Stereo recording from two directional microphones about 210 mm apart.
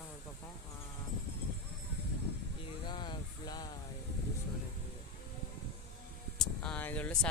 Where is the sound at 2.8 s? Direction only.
20° left (ahead or behind).